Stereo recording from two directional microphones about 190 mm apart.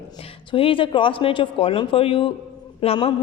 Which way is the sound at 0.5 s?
30° left (ahead or behind).